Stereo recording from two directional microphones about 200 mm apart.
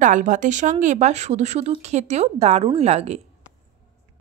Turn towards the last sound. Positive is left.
turn(degrees=-35)  # may be behind; listen again after turning